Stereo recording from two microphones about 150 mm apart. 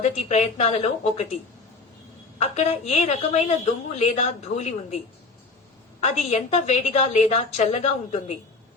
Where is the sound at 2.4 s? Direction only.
45° left (ahead or behind).